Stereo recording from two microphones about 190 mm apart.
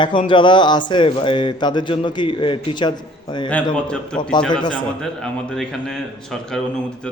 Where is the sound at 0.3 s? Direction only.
25° left (ahead or behind).